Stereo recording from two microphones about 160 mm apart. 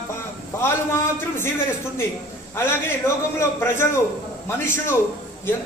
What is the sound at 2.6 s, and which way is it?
Speech, 15° left (ahead or behind).